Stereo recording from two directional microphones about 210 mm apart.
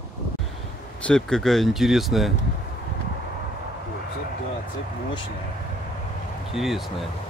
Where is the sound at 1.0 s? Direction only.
5° left (ahead or behind).